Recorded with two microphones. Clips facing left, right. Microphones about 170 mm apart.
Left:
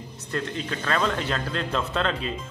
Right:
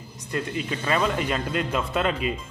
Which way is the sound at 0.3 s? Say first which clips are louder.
Right 1 dB; 10° right (ahead or behind).